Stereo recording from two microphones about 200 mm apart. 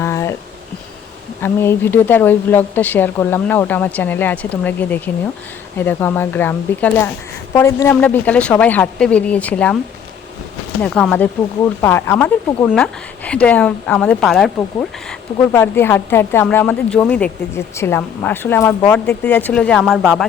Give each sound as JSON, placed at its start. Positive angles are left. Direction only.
{"t": 0.0, "sound": "a sound", "side_deg": 15}
{"t": 1.4, "sound": "speech", "side_deg": 10}
{"t": 10.8, "sound": "speech", "side_deg": 5}